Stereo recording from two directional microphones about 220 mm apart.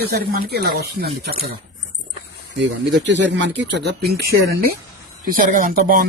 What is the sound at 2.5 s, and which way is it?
Speech, 55° right (ahead or behind).